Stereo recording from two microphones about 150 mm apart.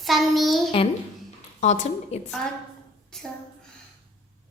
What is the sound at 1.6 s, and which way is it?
Speech, 50° left (ahead or behind).